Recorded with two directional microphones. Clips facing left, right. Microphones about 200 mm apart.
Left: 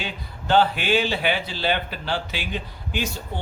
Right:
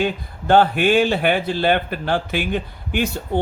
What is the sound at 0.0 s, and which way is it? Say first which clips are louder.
Speech: right 11 dB; 50° right (ahead or behind).